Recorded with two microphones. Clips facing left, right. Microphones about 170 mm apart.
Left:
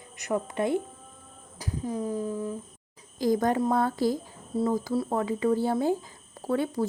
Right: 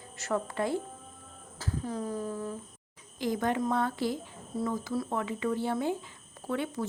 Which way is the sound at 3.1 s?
40° left (ahead or behind).